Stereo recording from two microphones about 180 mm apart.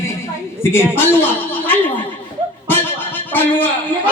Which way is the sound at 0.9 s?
10° left (ahead or behind).